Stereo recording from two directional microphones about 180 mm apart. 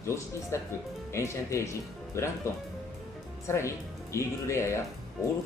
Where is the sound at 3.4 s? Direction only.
15° left (ahead or behind).